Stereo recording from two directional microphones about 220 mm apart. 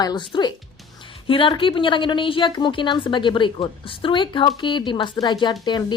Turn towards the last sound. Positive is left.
turn(degrees=20)  # may be behind; listen again after turning